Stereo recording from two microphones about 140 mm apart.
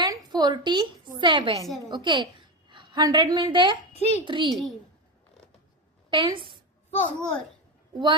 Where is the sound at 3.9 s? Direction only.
50° left (ahead or behind).